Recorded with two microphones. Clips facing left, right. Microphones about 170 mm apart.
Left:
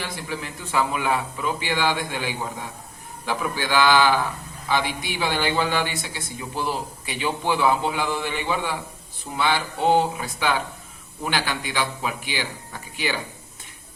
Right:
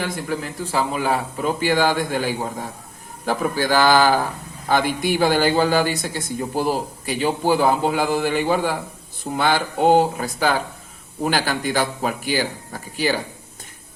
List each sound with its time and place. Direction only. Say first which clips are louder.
0.0 s a man's voice: right 6 dB; 50° right (ahead or behind)